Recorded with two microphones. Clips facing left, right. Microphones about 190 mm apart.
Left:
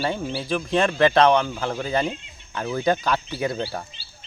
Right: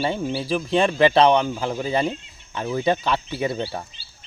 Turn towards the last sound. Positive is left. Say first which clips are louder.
# right 1 dB
turn(degrees=0)  # may be behind; listen again after turning